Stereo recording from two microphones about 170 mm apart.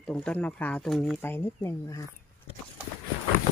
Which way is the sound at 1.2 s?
15° left (ahead or behind).